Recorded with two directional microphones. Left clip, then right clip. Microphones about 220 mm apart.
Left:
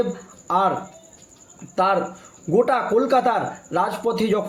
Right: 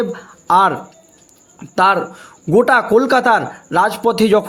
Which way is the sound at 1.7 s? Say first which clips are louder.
Right 6 dB; 50° right (ahead or behind).